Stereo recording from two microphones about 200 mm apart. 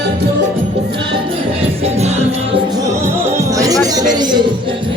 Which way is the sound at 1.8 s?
35° right (ahead or behind).